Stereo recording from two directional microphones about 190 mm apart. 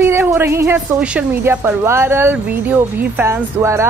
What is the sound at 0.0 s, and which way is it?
A woman's voice, 10° right (ahead or behind).